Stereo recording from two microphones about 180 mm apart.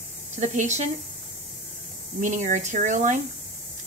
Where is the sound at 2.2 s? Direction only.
45° right (ahead or behind).